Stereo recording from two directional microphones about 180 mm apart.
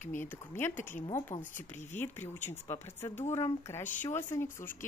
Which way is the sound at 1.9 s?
10° left (ahead or behind).